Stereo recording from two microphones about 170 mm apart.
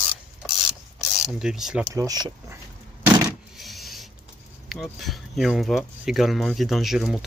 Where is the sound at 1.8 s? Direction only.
20° right (ahead or behind).